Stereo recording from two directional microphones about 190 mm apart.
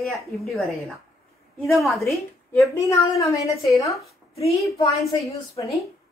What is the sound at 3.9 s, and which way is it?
Speech, centre (ahead or behind).